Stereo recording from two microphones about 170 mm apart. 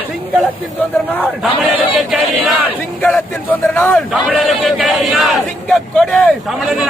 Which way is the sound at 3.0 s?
5° left (ahead or behind).